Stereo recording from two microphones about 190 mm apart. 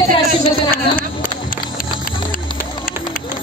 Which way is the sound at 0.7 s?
50° left (ahead or behind).